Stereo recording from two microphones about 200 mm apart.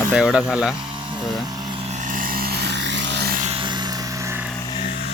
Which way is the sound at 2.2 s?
50° right (ahead or behind).